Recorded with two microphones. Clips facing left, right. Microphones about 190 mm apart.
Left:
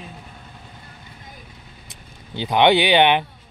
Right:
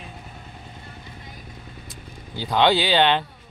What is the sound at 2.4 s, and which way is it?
Speech, 20° left (ahead or behind).